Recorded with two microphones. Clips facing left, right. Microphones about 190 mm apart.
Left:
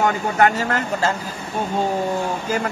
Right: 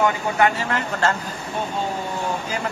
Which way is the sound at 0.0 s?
45° left (ahead or behind).